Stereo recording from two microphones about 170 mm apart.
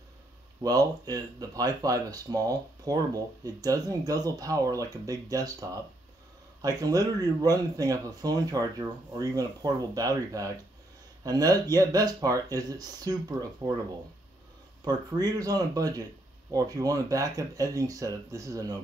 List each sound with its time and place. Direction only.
0.6 s speech: 20° right (ahead or behind)
14.9 s speech: 25° right (ahead or behind)